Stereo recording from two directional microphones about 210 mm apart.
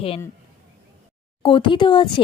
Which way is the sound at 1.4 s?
25° left (ahead or behind).